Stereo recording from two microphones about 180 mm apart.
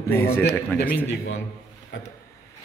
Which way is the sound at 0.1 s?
15° left (ahead or behind).